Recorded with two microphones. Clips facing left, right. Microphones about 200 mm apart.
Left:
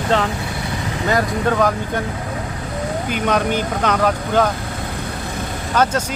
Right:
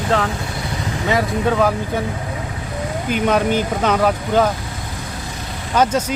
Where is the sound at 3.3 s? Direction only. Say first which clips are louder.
Right 2 dB; 5° right (ahead or behind).